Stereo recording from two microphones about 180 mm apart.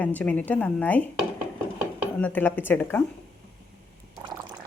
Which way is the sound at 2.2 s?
10° left (ahead or behind).